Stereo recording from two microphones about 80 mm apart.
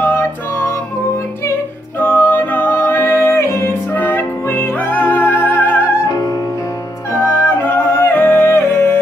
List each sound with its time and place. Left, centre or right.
2.0 s music: left
6.0 s music: left
7.1 s music: left